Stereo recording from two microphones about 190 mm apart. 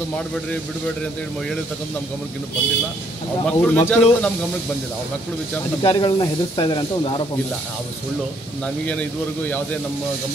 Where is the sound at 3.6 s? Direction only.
10° left (ahead or behind).